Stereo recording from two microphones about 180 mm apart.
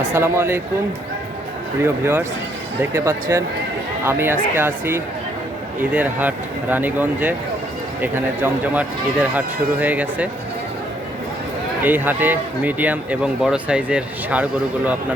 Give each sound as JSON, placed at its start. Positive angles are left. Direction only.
{"t": 0.1, "sound": "a man's voice", "side_deg": -15}
{"t": 1.8, "sound": "a man's voice", "side_deg": -15}
{"t": 11.8, "sound": "a man's voice", "side_deg": -10}